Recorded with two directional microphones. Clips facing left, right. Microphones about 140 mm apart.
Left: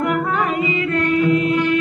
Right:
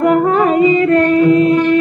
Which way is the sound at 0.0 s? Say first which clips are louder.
Right 8 dB; 40° right (ahead or behind).